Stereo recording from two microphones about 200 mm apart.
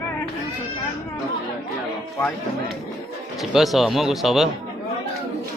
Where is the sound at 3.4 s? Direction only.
Centre (ahead or behind).